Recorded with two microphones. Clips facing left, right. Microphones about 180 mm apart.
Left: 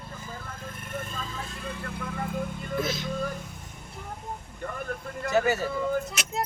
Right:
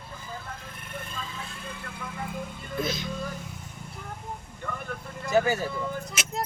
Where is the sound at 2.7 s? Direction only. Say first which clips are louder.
Even; centre (ahead or behind).